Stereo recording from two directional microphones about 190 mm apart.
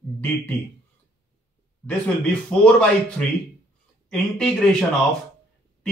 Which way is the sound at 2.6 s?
5° left (ahead or behind).